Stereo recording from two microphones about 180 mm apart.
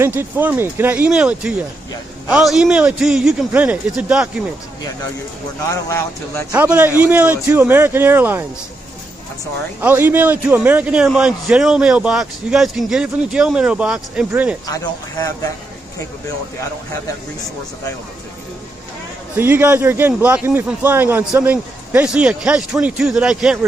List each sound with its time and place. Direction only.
0.0 s a man's voice: 10° right (ahead or behind)
5.7 s speech: 15° left (ahead or behind)
6.5 s a man's voice: 10° right (ahead or behind)
9.8 s a man's voice: 10° right (ahead or behind)
14.7 s speech: 20° left (ahead or behind)
19.3 s a man's voice: 10° right (ahead or behind)